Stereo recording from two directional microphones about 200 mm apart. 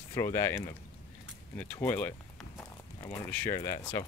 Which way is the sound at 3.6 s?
15° left (ahead or behind).